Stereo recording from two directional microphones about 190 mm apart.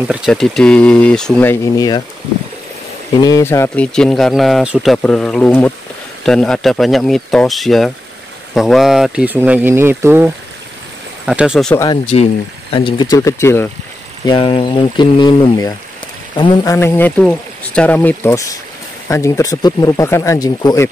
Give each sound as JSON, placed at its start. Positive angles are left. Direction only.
{"t": 0.1, "sound": "speech", "side_deg": 0}
{"t": 3.2, "sound": "speech", "side_deg": 15}
{"t": 11.7, "sound": "speech", "side_deg": 15}
{"t": 14.2, "sound": "speech", "side_deg": 25}
{"t": 16.7, "sound": "speech", "side_deg": 10}